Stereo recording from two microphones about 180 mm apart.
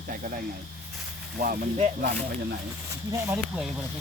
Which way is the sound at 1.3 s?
50° right (ahead or behind).